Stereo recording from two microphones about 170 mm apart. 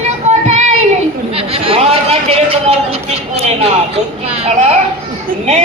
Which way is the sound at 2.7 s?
35° right (ahead or behind).